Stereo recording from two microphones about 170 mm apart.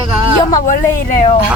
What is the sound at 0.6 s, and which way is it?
Speech, 50° left (ahead or behind).